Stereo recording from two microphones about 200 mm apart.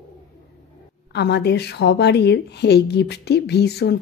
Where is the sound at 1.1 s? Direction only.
55° left (ahead or behind).